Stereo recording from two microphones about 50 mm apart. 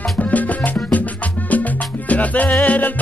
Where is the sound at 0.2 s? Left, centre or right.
Left.